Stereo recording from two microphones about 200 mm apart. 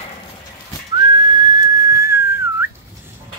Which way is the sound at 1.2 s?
20° right (ahead or behind).